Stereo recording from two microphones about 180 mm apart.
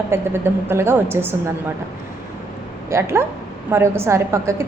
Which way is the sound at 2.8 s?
15° right (ahead or behind).